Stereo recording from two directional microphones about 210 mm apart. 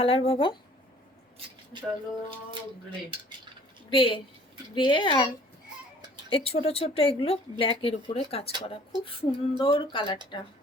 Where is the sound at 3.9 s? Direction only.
25° left (ahead or behind).